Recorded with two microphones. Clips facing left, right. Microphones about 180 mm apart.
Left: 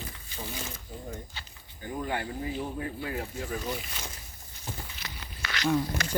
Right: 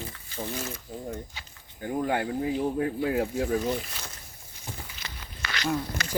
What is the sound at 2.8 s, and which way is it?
Speech, 75° right (ahead or behind).